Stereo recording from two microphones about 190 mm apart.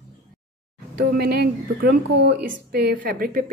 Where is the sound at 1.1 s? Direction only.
55° right (ahead or behind).